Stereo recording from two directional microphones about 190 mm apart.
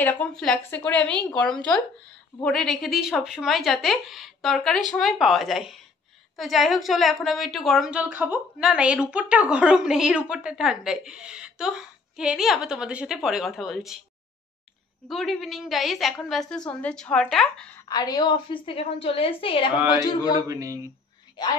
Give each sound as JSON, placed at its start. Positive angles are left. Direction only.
{"t": 0.0, "sound": "a woman's voice", "side_deg": 5}
{"t": 15.0, "sound": "a woman's voice", "side_deg": 0}
{"t": 17.8, "sound": "a woman's voice", "side_deg": 20}
{"t": 20.4, "sound": "speech", "side_deg": -20}